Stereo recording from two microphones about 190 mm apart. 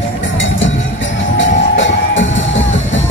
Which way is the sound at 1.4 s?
80° left.